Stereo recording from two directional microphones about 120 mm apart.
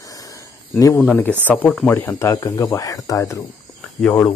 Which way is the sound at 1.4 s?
15° left (ahead or behind).